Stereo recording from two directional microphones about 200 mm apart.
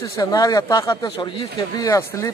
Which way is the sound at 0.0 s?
15° left (ahead or behind).